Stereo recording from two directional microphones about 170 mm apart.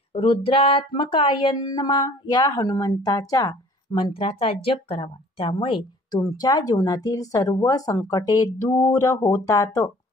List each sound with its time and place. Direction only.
0.1 s speech: 30° left (ahead or behind)